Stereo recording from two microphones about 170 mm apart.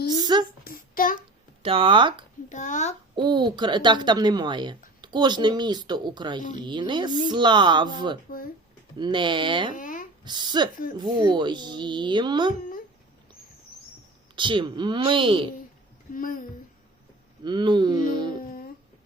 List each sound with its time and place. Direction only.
0.1 s a sound: 25° right (ahead or behind)
0.6 s child singing: 55° left (ahead or behind)
1.6 s speech: 30° right (ahead or behind)
2.5 s speech: 45° left (ahead or behind)
3.2 s speech: 25° right (ahead or behind)
9.7 s a sound: 50° left (ahead or behind)
10.2 s speech: 25° right (ahead or behind)
14.3 s speech: 30° right (ahead or behind)
16.1 s speech: 55° left (ahead or behind)
17.4 s speech: 25° right (ahead or behind)